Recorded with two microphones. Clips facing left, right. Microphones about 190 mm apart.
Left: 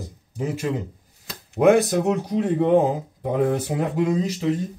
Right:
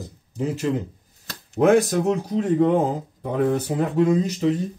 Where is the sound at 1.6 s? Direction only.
10° left (ahead or behind).